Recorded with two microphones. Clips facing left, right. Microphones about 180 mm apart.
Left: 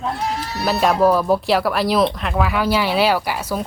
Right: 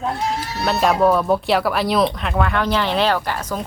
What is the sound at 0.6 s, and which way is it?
A woman's voice, centre (ahead or behind).